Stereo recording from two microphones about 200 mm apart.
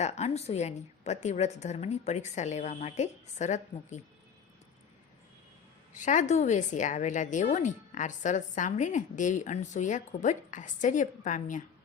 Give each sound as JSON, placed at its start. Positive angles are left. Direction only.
{"t": 0.0, "sound": "a woman's voice", "side_deg": 35}
{"t": 5.9, "sound": "a woman's voice", "side_deg": 40}